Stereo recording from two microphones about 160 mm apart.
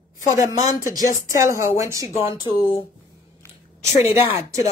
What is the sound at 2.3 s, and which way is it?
Speech, 25° left (ahead or behind).